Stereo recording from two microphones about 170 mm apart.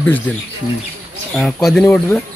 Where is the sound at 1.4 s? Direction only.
Centre (ahead or behind).